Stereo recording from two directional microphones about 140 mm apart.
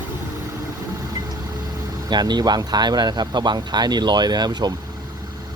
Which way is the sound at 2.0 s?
30° right (ahead or behind).